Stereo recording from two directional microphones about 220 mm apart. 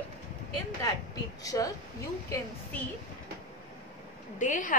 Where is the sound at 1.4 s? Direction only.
15° left (ahead or behind).